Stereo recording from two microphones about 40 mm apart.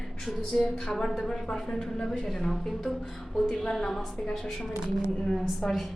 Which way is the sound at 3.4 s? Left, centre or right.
Centre.